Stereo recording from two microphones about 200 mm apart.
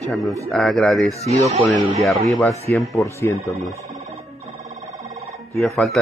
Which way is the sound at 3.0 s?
15° left (ahead or behind).